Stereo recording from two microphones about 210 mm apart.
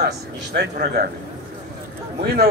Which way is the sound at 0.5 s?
50° right (ahead or behind).